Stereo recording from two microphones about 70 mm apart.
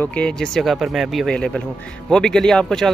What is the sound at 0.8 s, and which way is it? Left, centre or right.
Speech, centre.